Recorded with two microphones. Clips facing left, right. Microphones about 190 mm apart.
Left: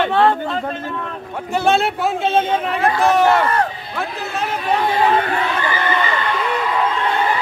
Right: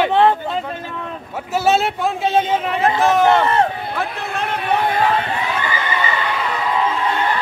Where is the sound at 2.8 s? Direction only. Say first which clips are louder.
Even; 20° right (ahead or behind).